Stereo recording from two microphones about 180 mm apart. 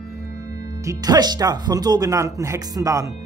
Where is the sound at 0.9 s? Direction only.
20° right (ahead or behind).